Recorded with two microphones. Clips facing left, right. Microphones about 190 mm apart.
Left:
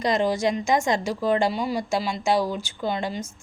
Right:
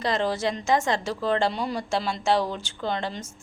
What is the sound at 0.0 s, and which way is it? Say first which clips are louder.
A woman's voice: left 3 dB; 15° left (ahead or behind).